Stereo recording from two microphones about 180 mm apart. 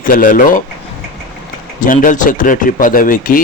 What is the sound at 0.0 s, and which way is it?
Speech, 50° left (ahead or behind).